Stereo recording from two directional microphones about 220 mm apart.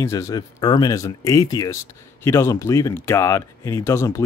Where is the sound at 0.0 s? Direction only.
15° left (ahead or behind).